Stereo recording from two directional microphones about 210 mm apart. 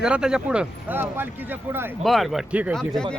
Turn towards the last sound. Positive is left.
turn(degrees=5)  # may be behind; listen again after turning